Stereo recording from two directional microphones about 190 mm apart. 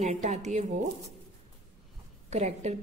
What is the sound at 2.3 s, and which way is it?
Speech, 35° right (ahead or behind).